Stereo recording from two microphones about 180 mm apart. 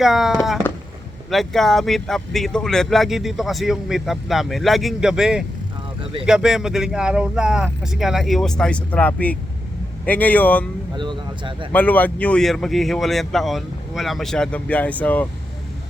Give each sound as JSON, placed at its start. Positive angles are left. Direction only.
{"t": 0.0, "sound": "speech", "side_deg": 0}
{"t": 10.9, "sound": "speech", "side_deg": -25}
{"t": 11.7, "sound": "speech", "side_deg": 10}